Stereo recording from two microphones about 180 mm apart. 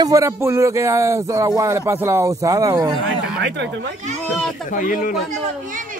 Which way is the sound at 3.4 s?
80° right.